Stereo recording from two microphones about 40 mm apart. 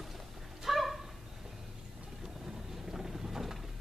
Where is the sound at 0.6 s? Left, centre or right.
Centre.